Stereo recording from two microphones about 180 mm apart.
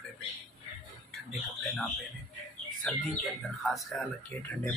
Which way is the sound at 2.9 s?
5° left (ahead or behind).